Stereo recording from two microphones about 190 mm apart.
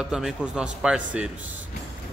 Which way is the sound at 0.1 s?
5° right (ahead or behind).